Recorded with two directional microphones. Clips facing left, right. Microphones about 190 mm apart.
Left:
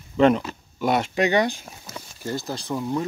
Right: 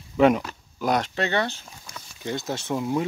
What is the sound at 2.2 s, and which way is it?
Speech, centre (ahead or behind).